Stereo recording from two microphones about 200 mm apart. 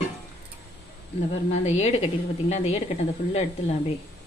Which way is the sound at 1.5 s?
35° left (ahead or behind).